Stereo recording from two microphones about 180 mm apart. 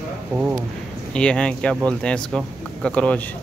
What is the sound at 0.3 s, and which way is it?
Speech, 10° right (ahead or behind).